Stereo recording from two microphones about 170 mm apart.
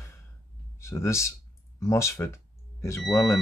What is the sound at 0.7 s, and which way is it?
Speech, 15° left (ahead or behind).